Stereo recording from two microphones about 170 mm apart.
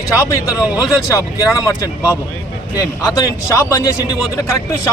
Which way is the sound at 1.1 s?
20° left (ahead or behind).